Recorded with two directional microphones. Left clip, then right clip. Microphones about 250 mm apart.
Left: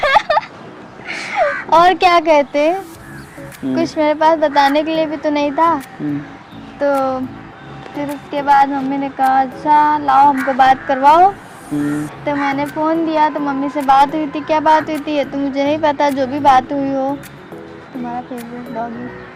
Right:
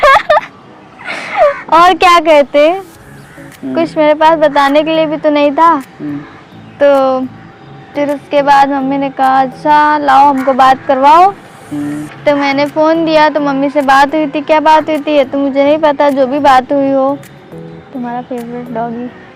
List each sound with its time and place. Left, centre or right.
0.0 s a sound: right
1.0 s speech: centre
7.9 s a sound: right
10.6 s speech: centre
11.0 s speech: centre
12.2 s speech: right